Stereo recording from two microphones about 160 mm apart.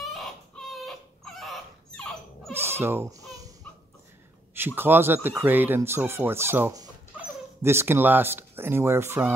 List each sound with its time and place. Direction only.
0.0 s chicken: centre (ahead or behind)
0.7 s dog: centre (ahead or behind)
2.5 s goat: 15° right (ahead or behind)
4.6 s speech: 15° right (ahead or behind)